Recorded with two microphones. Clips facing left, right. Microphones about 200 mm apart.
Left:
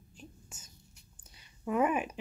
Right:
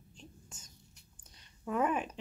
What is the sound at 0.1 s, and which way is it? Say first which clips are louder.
Whispering: left 3 dB; 5° left (ahead or behind).